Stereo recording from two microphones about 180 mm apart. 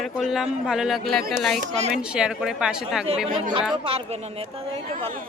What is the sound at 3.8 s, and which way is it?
Speech, 30° right (ahead or behind).